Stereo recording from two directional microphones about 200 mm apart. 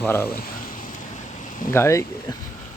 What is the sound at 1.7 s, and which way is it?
Speech, 15° left (ahead or behind).